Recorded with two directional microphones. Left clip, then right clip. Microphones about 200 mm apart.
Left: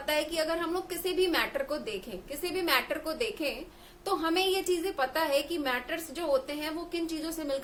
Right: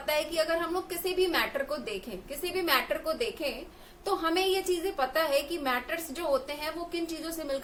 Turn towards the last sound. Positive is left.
turn(degrees=15)  # may be behind; listen again after turning